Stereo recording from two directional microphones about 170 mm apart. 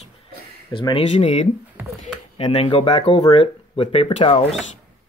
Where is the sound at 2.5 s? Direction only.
30° left (ahead or behind).